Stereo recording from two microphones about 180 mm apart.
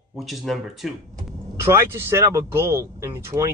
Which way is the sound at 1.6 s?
15° right (ahead or behind).